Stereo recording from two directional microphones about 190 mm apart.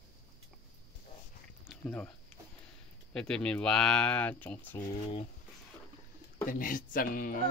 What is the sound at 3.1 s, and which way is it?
Speech, 5° left (ahead or behind).